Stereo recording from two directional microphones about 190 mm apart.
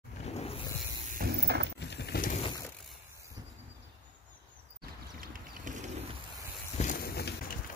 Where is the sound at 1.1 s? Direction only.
55° right (ahead or behind).